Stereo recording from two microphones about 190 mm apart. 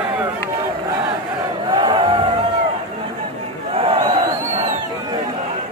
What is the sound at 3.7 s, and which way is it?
Battle cry, 30° right (ahead or behind).